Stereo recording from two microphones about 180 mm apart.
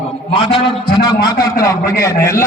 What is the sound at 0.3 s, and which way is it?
A man's voice, 30° left (ahead or behind).